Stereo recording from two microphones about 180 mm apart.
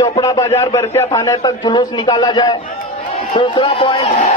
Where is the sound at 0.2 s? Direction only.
15° left (ahead or behind).